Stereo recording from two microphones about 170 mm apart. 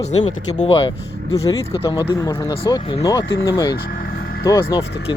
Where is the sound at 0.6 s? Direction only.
35° left (ahead or behind).